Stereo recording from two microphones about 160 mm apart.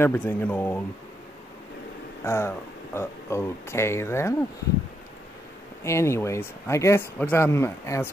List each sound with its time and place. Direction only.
0.0 s speech: 10° left (ahead or behind)
2.2 s speech: 15° left (ahead or behind)
5.9 s speech: 15° left (ahead or behind)